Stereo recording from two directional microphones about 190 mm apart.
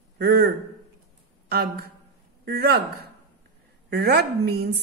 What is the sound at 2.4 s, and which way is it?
Speech, 55° right (ahead or behind).